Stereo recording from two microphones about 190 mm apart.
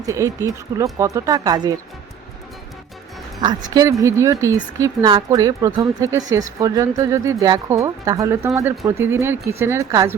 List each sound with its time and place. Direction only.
0.0 s a woman's voice: 15° right (ahead or behind)
3.4 s a woman's voice: 20° right (ahead or behind)